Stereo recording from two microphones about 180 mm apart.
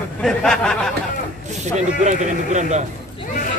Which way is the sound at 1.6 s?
40° right (ahead or behind).